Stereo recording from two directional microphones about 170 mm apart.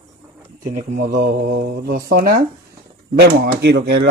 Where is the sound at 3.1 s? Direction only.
70° right (ahead or behind).